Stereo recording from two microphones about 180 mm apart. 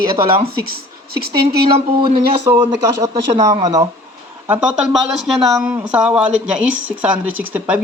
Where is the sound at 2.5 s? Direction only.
15° right (ahead or behind).